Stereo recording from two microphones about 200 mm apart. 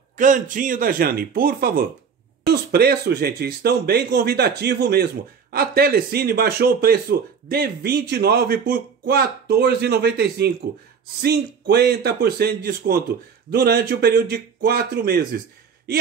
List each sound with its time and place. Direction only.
0.1 s speech: 40° right (ahead or behind)